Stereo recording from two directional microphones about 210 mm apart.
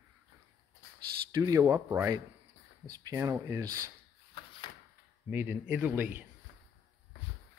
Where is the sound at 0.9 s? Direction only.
15° right (ahead or behind).